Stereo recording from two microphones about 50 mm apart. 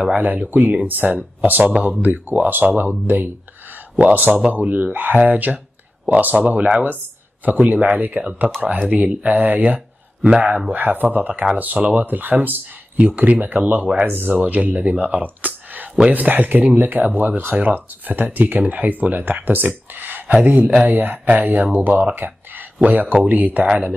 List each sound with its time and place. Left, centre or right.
0.0 s speech: right
4.0 s speech: right
10.2 s speech: right
19.9 s a sound: right
20.4 s speech: right